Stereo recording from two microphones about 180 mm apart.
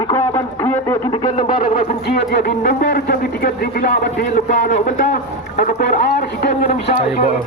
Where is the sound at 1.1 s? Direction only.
45° left (ahead or behind).